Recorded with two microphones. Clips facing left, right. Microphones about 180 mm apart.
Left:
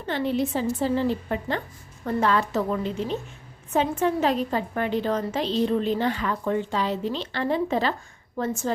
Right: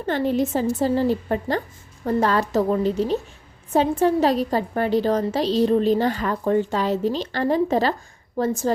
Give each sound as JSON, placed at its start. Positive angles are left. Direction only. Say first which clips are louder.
{"t": 0.0, "sound": "a woman's voice", "louder": "right 4 dB", "side_deg": -45}